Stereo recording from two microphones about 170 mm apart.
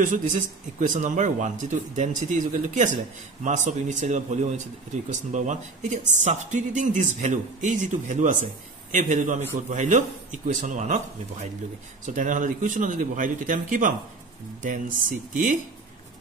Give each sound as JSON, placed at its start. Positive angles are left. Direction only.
{"t": 0.0, "sound": "speech", "side_deg": -50}
{"t": 12.1, "sound": "speech", "side_deg": -50}